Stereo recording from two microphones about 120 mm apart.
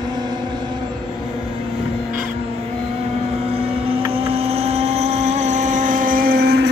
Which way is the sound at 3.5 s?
55° right (ahead or behind).